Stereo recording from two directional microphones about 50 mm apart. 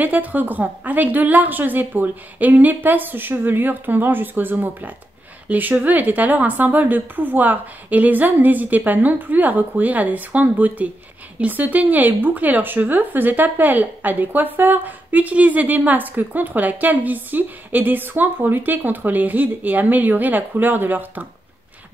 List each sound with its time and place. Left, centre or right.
0.0 s speech: right